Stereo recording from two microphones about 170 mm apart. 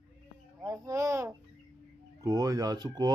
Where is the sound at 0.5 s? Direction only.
20° right (ahead or behind).